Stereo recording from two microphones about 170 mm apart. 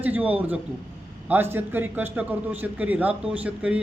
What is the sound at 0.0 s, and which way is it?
A man's voice, 10° right (ahead or behind).